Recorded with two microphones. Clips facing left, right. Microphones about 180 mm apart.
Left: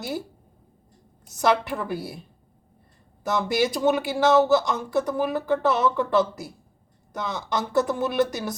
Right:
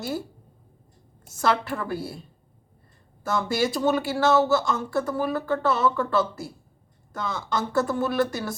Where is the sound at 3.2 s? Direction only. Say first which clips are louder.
Left 1 dB; 15° left (ahead or behind).